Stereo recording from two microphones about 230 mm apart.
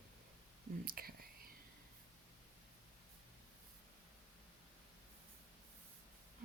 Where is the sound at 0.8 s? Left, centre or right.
Right.